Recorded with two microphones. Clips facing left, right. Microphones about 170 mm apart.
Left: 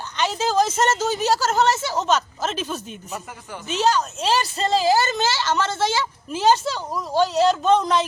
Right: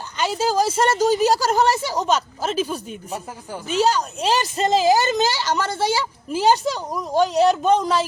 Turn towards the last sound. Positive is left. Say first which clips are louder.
# even
turn(degrees=-10)  # may be behind; listen again after turning